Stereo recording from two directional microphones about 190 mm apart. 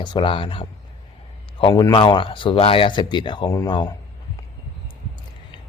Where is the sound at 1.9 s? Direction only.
25° left (ahead or behind).